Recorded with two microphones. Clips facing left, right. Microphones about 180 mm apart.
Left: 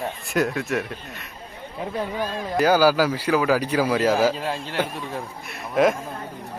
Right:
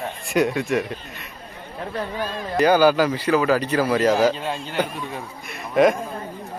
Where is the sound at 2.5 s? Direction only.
5° left (ahead or behind).